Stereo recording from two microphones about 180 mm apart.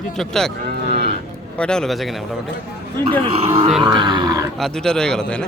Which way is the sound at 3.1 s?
35° right (ahead or behind).